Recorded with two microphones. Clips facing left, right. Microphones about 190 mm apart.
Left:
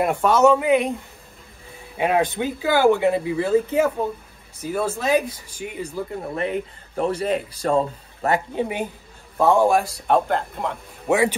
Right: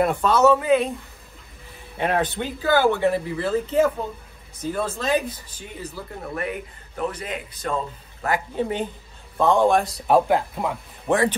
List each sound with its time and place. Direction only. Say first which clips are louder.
0.0 s speech: left 1 dB; 15° left (ahead or behind)
2.0 s speech: left 3 dB; 10° left (ahead or behind)
4.6 s speech: left 2 dB; 10° left (ahead or behind)
6.3 s speech: left 3 dB; 30° left (ahead or behind)
8.5 s speech: even; 10° left (ahead or behind); by 10.8 s 5° right (ahead or behind)
11.1 s speech: left 1 dB; 10° left (ahead or behind)